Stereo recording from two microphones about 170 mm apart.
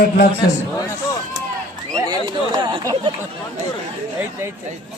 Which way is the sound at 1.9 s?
25° right (ahead or behind).